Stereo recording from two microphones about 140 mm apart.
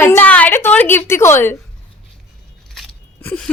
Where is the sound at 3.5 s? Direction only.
10° left (ahead or behind).